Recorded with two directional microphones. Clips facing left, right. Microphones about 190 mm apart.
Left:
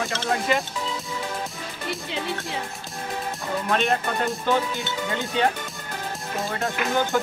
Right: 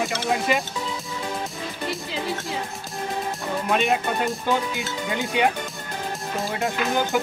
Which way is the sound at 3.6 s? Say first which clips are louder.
Right 2 dB; 5° right (ahead or behind).